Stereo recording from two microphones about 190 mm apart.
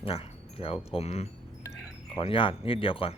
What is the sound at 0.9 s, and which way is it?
Speech, 35° left (ahead or behind).